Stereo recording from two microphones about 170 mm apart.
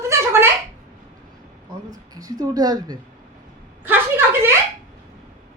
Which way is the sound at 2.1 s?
20° right (ahead or behind).